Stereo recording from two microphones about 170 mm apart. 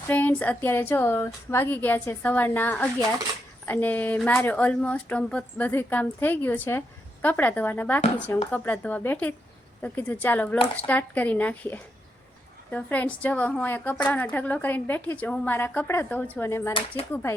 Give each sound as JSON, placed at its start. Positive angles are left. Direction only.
{"t": 0.1, "sound": "speech", "side_deg": 10}
{"t": 16.9, "sound": "speech", "side_deg": -20}